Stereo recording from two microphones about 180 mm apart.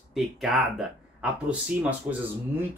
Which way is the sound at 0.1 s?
Centre (ahead or behind).